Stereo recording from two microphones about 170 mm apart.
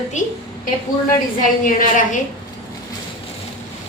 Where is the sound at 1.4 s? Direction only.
50° left (ahead or behind).